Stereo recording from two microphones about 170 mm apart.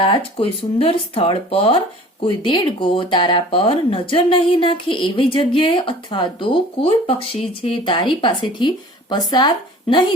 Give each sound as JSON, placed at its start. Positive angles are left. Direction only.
{"t": 0.0, "sound": "speech", "side_deg": 30}